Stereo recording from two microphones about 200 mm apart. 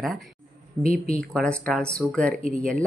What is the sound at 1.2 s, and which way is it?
Speech, 5° left (ahead or behind).